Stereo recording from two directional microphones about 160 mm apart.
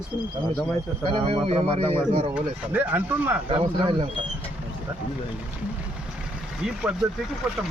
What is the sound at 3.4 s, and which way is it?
Speech, 30° right (ahead or behind).